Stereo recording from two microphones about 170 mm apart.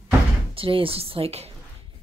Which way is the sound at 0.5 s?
30° right (ahead or behind).